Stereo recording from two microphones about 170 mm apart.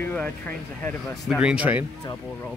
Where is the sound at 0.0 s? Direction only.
10° left (ahead or behind); by 1.9 s 10° right (ahead or behind).